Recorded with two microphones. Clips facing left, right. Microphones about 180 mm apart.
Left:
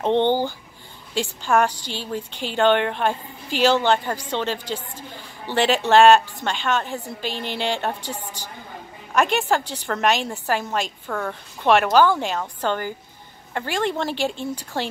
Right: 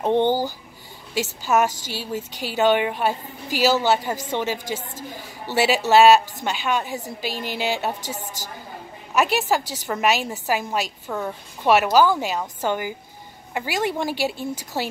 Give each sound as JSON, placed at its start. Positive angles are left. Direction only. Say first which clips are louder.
{"t": 1.4, "sound": "a woman's voice", "louder": "even", "side_deg": -5}
{"t": 8.0, "sound": "a woman's voice", "louder": "even", "side_deg": -45}
{"t": 9.1, "sound": "a woman's voice", "louder": "even", "side_deg": -5}
{"t": 9.6, "sound": "a woman's voice", "louder": "left 1 dB", "side_deg": -40}
{"t": 9.8, "sound": "a woman's voice", "louder": "even", "side_deg": -5}